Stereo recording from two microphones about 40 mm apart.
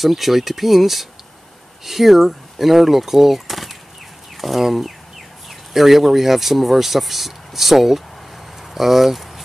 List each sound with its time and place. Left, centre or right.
0.0 s speech: centre